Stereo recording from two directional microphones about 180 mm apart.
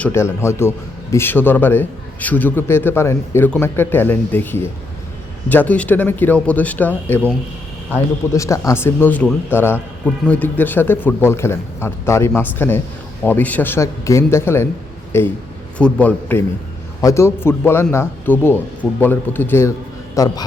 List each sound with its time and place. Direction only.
0.0 s a man's voice: 15° left (ahead or behind)